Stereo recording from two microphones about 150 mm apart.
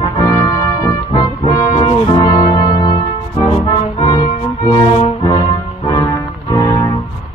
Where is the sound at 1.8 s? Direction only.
35° left (ahead or behind).